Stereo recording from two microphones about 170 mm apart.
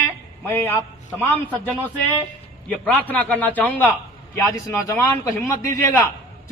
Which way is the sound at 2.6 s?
10° left (ahead or behind).